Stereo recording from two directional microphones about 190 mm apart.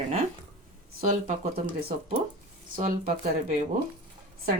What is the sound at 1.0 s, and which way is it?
Speech, 45° right (ahead or behind).